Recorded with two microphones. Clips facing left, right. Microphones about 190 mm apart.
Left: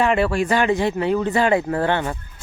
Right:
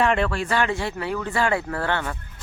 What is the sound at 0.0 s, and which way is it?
Speech, 5° left (ahead or behind).